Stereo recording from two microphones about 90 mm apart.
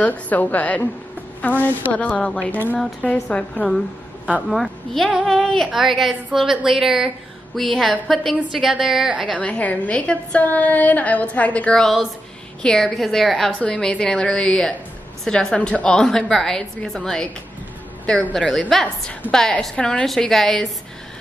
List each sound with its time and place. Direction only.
0.0 s a woman's voice: 15° left (ahead or behind)
4.5 s a woman's voice: centre (ahead or behind)
9.3 s a woman's voice: 15° left (ahead or behind)